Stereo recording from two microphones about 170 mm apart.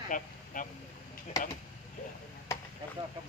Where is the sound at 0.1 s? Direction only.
50° left (ahead or behind).